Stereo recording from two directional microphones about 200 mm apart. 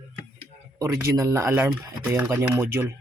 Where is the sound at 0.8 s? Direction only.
15° right (ahead or behind).